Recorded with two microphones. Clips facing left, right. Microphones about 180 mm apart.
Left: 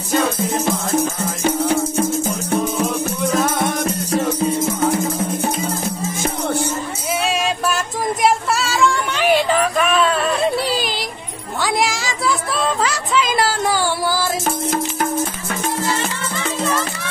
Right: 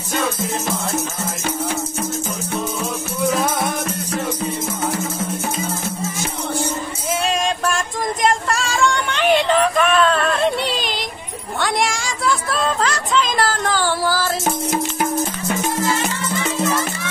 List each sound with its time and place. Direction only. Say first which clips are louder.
3.3 s music: even; 10° right (ahead or behind)
7.2 s music: even; 5° left (ahead or behind)
14.7 s music: even; 20° right (ahead or behind)